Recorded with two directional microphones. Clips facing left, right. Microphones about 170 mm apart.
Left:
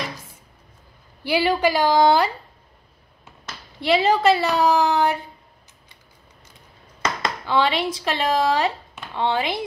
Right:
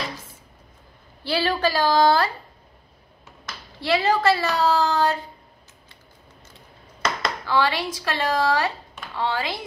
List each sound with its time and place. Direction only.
1.2 s a woman's voice: 15° left (ahead or behind)
3.8 s a woman's voice: 20° left (ahead or behind)
7.2 s speech: 20° left (ahead or behind)